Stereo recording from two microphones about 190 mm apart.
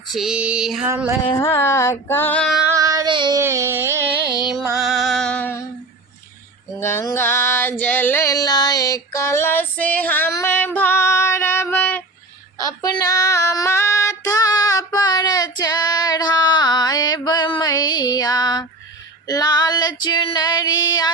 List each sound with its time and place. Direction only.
0.1 s female singing: centre (ahead or behind)
0.9 s a sound: 10° right (ahead or behind)
1.4 s music: 15° left (ahead or behind)
2.7 s child singing: 15° right (ahead or behind)
3.4 s carnatic music: 15° right (ahead or behind)
4.8 s music: centre (ahead or behind)
6.7 s female singing: 15° left (ahead or behind)